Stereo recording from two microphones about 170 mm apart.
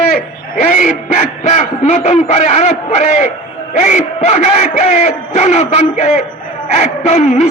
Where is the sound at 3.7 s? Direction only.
45° left (ahead or behind).